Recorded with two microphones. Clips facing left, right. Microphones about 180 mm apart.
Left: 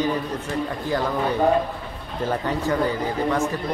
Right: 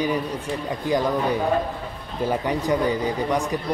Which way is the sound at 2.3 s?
15° right (ahead or behind).